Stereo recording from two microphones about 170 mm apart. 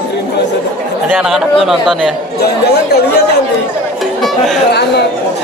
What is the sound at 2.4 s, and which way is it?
Speech, 70° left (ahead or behind).